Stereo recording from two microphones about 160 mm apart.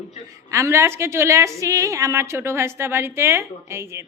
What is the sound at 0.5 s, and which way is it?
A woman's voice, 15° right (ahead or behind).